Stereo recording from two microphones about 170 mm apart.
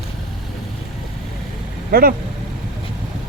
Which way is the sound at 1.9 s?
60° right (ahead or behind).